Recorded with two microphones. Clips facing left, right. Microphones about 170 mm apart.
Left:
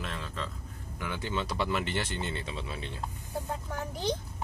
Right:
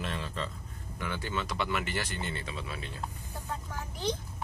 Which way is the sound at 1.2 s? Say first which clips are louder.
Left 3 dB; 25° left (ahead or behind).